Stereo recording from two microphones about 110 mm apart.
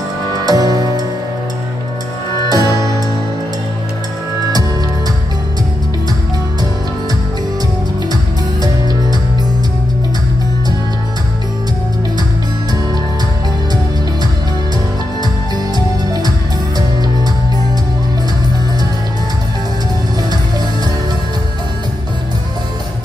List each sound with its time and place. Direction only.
0.5 s music: 35° right (ahead or behind)
2.5 s music: 35° right (ahead or behind)
15.5 s music: 40° right (ahead or behind)